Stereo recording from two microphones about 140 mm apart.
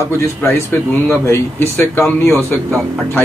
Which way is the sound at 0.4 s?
15° left (ahead or behind).